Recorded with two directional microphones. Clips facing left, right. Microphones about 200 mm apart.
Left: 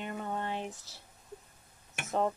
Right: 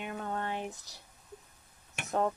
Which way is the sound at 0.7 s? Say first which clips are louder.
Even; 15° right (ahead or behind).